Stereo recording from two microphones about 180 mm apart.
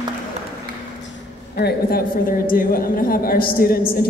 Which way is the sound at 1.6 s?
60° left (ahead or behind).